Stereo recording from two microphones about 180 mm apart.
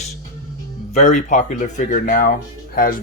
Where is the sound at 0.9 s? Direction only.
40° left (ahead or behind).